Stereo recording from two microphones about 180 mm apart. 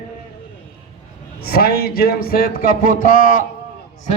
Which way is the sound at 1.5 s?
60° left (ahead or behind).